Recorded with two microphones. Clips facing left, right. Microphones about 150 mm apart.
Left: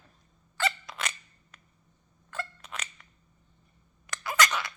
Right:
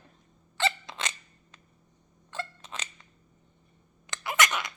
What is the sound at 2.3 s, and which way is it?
Scissors, 20° right (ahead or behind).